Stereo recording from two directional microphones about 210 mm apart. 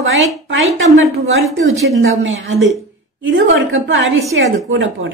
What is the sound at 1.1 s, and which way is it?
Speech, 75° right (ahead or behind).